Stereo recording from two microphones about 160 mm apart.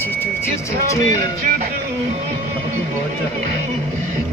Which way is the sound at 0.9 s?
20° left (ahead or behind).